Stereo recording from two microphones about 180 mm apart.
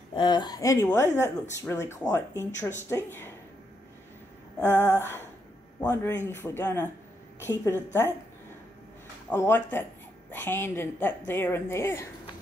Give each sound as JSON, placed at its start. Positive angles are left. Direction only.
{"t": 0.1, "sound": "a woman's voice", "side_deg": 25}
{"t": 4.6, "sound": "a sound", "side_deg": -10}
{"t": 5.8, "sound": "a woman's voice", "side_deg": 15}
{"t": 9.3, "sound": "a woman's voice", "side_deg": 10}